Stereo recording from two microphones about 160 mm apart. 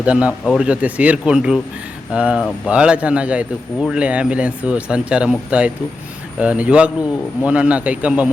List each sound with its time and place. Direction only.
0.0 s a man's voice: 5° right (ahead or behind)